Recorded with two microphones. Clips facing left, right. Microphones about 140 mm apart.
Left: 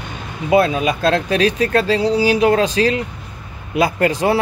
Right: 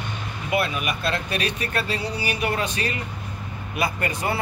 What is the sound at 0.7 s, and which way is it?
Speech, 90° left.